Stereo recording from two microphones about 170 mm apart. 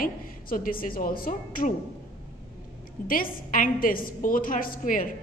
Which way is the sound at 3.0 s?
55° left (ahead or behind).